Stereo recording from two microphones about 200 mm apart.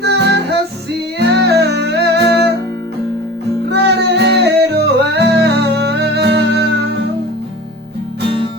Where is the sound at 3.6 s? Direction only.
55° right (ahead or behind).